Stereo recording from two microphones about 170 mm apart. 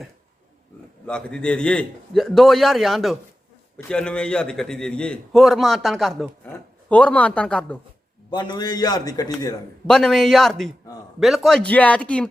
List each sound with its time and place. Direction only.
1.0 s a man's voice: 5° left (ahead or behind)
8.3 s a man's voice: 25° left (ahead or behind)
9.8 s a man's voice: 5° left (ahead or behind)